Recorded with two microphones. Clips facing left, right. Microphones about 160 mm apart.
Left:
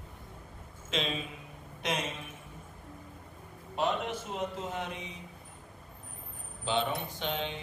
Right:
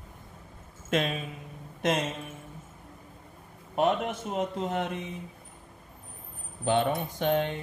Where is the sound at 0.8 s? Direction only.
50° right (ahead or behind).